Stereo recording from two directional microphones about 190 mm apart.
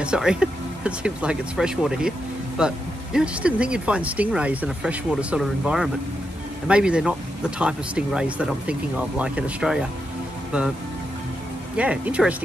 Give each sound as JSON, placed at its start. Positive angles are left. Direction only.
{"t": 0.0, "sound": "speech", "side_deg": -5}
{"t": 11.7, "sound": "speech", "side_deg": -5}